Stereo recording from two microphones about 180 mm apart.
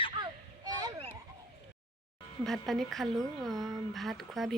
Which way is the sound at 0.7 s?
20° right (ahead or behind).